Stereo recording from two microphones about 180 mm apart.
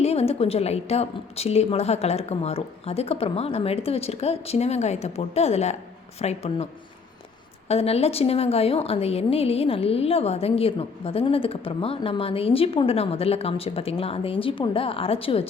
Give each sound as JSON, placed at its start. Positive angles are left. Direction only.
{"t": 0.0, "sound": "a woman's voice", "side_deg": 35}
{"t": 7.7, "sound": "a woman's voice", "side_deg": 35}